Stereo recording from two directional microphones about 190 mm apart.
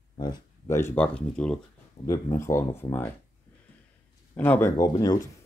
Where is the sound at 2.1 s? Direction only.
15° left (ahead or behind).